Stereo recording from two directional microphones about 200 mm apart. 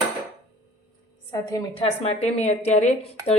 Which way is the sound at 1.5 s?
30° left (ahead or behind).